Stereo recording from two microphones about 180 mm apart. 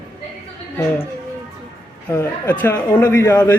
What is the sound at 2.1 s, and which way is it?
Speech, 15° left (ahead or behind).